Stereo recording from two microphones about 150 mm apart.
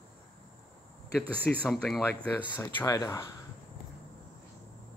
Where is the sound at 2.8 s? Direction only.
25° left (ahead or behind).